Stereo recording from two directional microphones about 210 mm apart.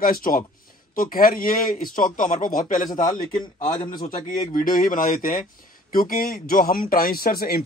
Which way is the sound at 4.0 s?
40° left (ahead or behind).